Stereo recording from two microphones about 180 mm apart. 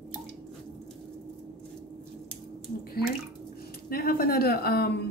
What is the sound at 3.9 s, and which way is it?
Speech, 55° left (ahead or behind).